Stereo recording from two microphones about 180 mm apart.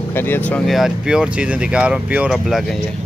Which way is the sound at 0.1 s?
10° left (ahead or behind).